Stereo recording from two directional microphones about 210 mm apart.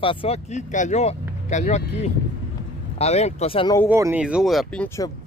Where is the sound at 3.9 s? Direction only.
10° right (ahead or behind).